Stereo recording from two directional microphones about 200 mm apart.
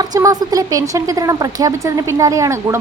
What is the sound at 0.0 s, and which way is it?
Speech, 20° right (ahead or behind).